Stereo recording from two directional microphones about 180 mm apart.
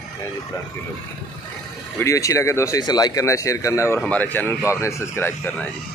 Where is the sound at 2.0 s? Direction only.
15° left (ahead or behind).